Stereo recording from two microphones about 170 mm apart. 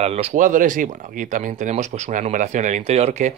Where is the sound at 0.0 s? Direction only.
35° right (ahead or behind).